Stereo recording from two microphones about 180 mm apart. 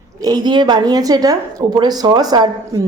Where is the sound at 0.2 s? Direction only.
20° right (ahead or behind).